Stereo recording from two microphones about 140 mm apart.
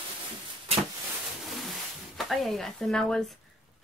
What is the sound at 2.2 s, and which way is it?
Speech, centre (ahead or behind).